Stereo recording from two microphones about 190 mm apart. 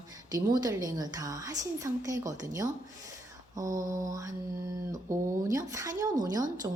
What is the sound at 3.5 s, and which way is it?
Mantra, 15° right (ahead or behind).